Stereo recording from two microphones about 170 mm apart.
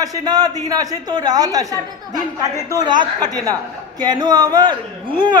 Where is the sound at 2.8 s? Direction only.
25° right (ahead or behind).